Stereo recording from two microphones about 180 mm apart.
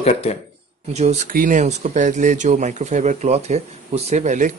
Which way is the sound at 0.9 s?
40° right (ahead or behind).